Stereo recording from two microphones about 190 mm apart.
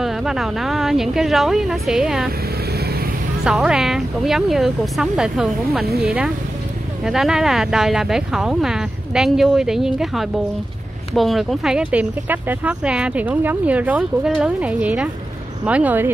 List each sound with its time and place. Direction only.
0.0 s speech: centre (ahead or behind)
3.4 s speech: 5° right (ahead or behind)